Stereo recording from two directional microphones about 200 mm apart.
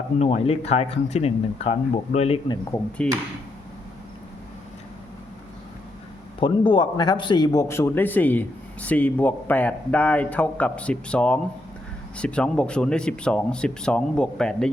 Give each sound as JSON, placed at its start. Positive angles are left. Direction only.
{"t": 0.2, "sound": "speech", "side_deg": 30}
{"t": 3.0, "sound": "speech", "side_deg": 5}
{"t": 6.4, "sound": "a man's voice", "side_deg": 25}